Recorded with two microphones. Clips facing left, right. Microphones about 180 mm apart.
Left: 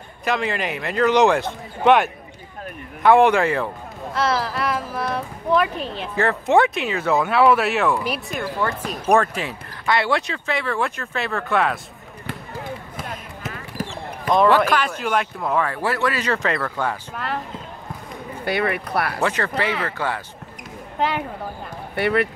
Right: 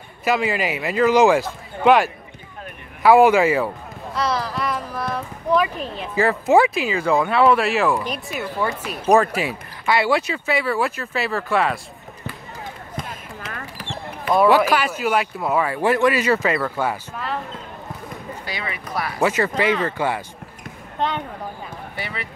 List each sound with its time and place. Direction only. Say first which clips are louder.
0.2 s speech: right 2 dB; 5° right (ahead or behind)
14.2 s speech: right 1 dB; 10° right (ahead or behind)
17.1 s speech: even; centre (ahead or behind)
18.4 s speech: left 13 dB; 60° left (ahead or behind)
19.2 s speech: right 3 dB; 10° right (ahead or behind)
21.0 s speech: left 1 dB; 5° left (ahead or behind)
21.9 s speech: left 14 dB; 60° left (ahead or behind)